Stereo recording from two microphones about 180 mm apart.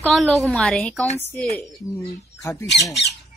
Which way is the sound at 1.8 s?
20° left (ahead or behind).